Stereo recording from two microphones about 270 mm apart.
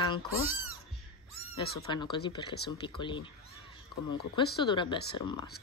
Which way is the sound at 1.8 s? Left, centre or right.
Centre.